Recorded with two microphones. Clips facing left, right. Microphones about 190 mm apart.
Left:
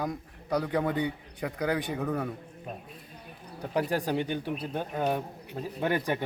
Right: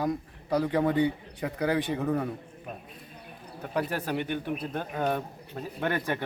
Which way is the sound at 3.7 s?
15° left (ahead or behind).